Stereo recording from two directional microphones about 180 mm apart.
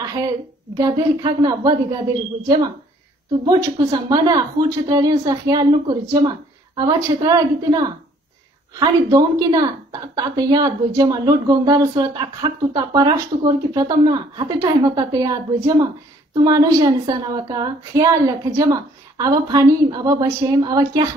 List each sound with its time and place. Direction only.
0.0 s a sound: 20° right (ahead or behind)
0.7 s a woman's voice: 20° right (ahead or behind)
3.4 s a woman's voice: 20° right (ahead or behind)